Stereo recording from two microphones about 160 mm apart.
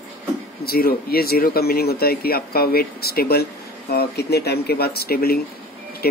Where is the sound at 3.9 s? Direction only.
90° left.